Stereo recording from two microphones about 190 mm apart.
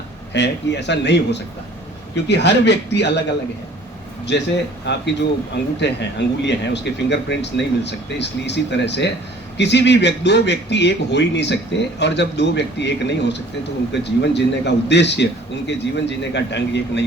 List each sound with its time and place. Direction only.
0.3 s a man's voice: 65° left (ahead or behind)
4.3 s a man's voice: 65° left (ahead or behind)